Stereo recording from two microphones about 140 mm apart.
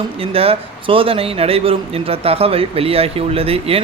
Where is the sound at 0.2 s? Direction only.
45° right (ahead or behind).